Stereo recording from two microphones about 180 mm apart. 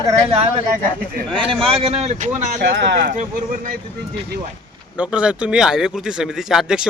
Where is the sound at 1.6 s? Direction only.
30° right (ahead or behind); by 3.7 s 45° right (ahead or behind).